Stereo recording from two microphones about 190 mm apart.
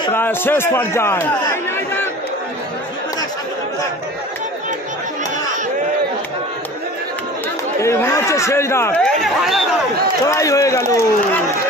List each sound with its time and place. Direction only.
0.1 s a man's voice: 10° left (ahead or behind)
7.8 s a man's voice: 15° left (ahead or behind)
10.2 s a man's voice: 15° left (ahead or behind)